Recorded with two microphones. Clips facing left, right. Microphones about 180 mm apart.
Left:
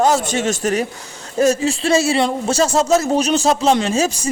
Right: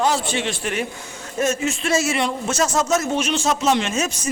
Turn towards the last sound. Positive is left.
turn(degrees=30)  # may be behind; listen again after turning